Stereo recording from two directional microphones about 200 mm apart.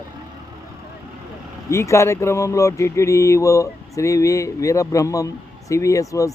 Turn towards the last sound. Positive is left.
turn(degrees=15)  # may be behind; listen again after turning